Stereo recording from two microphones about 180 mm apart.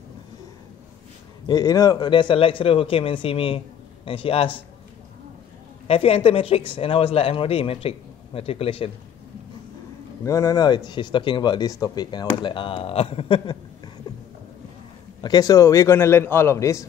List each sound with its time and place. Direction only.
1.5 s speech: 20° left (ahead or behind)
5.9 s speech: 30° left (ahead or behind)
10.2 s speech: 20° left (ahead or behind)
15.2 s a man's voice: 20° left (ahead or behind)